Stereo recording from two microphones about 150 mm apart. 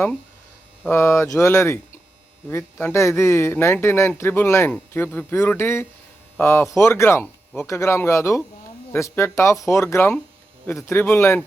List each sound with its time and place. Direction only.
0.9 s speech: 20° left (ahead or behind)
2.8 s speech: 20° left (ahead or behind)